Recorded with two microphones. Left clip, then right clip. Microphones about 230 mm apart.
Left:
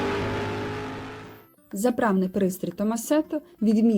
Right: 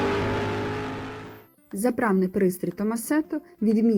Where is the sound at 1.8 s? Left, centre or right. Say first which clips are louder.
Left 1 dB; right.